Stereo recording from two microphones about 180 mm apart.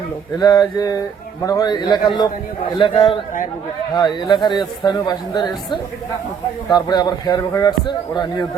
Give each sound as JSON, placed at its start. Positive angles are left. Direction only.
{"t": 0.3, "sound": "speech", "side_deg": 20}